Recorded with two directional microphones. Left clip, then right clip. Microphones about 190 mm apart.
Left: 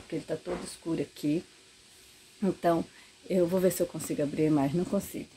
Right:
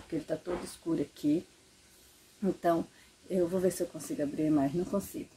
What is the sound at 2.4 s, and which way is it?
Speech, 30° left (ahead or behind).